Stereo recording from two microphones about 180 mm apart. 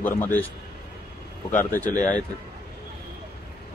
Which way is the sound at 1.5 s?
10° left (ahead or behind).